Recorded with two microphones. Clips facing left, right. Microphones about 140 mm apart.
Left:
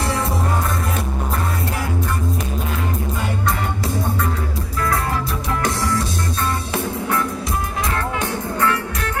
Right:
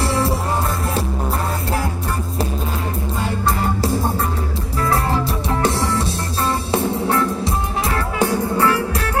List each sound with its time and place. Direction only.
0.0 s music: 30° right (ahead or behind)
3.4 s music: 30° right (ahead or behind)
8.5 s music: 35° right (ahead or behind)